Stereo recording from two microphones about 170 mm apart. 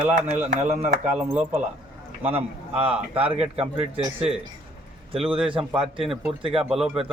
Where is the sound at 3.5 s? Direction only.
35° right (ahead or behind).